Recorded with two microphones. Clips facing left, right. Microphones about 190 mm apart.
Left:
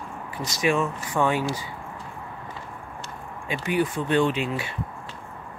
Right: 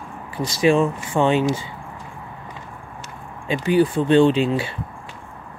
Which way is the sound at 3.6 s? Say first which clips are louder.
Right 7 dB; 30° right (ahead or behind).